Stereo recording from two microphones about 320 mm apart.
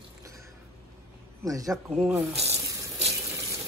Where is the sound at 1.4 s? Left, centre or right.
Centre.